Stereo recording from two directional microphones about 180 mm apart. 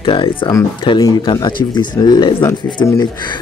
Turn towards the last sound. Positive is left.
turn(degrees=20)  # may be behind; listen again after turning